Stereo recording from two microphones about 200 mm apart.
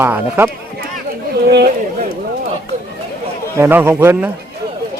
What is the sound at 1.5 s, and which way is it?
Speech, 55° right (ahead or behind).